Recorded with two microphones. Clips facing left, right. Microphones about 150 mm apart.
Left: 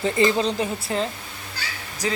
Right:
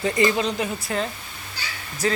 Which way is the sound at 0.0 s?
25° left (ahead or behind).